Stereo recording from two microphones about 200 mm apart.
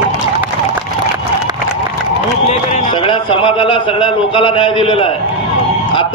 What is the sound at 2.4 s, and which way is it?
A man's voice, 35° left (ahead or behind).